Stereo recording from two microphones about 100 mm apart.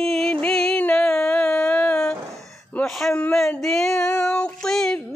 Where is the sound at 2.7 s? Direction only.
10° left (ahead or behind).